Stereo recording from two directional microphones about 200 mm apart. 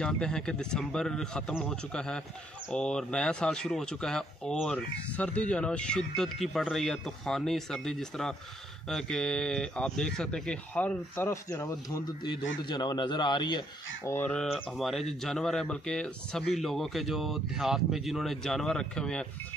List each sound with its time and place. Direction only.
0.0 s speech: 5° left (ahead or behind)